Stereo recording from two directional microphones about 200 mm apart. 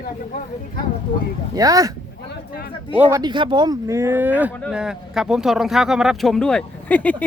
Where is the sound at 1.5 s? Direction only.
15° right (ahead or behind).